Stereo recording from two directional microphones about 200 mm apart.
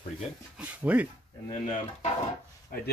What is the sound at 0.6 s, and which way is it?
Speech, 5° right (ahead or behind).